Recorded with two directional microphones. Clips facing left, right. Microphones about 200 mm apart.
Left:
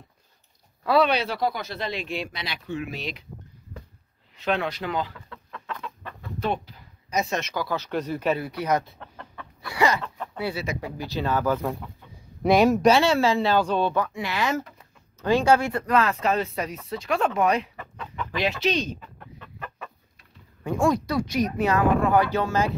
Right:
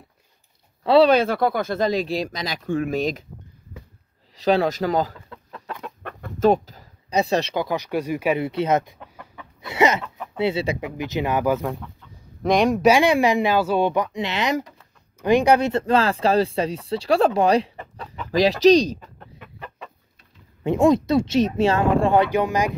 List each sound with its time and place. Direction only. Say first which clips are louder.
0.8 s speech: right 6 dB; 30° right (ahead or behind)
1.1 s speech: right 7 dB; 50° right (ahead or behind)
4.4 s speech: right 7 dB; 35° right (ahead or behind)
5.7 s chicken: right 2 dB; 45° right (ahead or behind)
7.6 s speech: right 3 dB; 15° right (ahead or behind)
8.5 s speech: right 4 dB; 25° right (ahead or behind)
8.9 s chicken: even; 10° right (ahead or behind)
9.6 s chicken: right 4 dB; 20° right (ahead or behind)
10.3 s speech: right 8 dB; 25° right (ahead or behind)
12.4 s speech: even; 5° left (ahead or behind)
12.8 s speech: right 3 dB; 15° right (ahead or behind); by 19.2 s 35° right (ahead or behind)
20.6 s speech: right 6 dB; 20° right (ahead or behind)